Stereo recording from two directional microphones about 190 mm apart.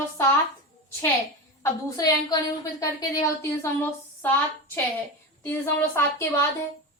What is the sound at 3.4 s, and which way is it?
A woman's voice, 10° left (ahead or behind).